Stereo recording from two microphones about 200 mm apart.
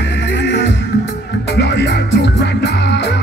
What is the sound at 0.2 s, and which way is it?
Music, 60° left (ahead or behind).